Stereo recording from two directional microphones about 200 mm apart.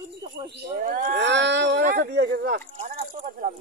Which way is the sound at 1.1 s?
60° right (ahead or behind).